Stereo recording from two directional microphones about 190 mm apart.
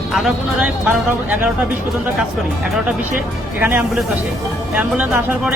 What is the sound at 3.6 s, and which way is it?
Speech, 5° right (ahead or behind).